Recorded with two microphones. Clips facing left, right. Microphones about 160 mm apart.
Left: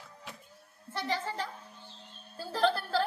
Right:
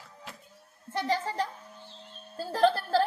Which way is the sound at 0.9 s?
40° right (ahead or behind).